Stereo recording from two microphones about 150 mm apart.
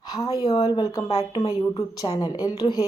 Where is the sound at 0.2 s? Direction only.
25° left (ahead or behind).